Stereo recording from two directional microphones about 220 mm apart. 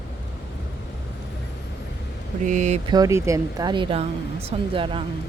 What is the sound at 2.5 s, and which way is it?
Speech, 35° right (ahead or behind).